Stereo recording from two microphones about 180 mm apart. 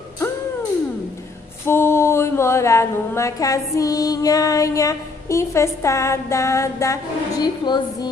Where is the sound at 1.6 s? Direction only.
15° left (ahead or behind).